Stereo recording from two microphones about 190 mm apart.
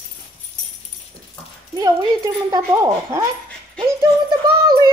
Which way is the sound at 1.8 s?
20° right (ahead or behind).